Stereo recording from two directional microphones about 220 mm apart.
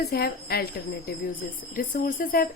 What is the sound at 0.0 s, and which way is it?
Speech, 45° left (ahead or behind).